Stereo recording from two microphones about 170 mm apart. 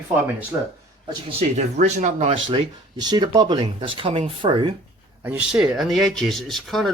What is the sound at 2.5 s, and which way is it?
Speech, 25° right (ahead or behind).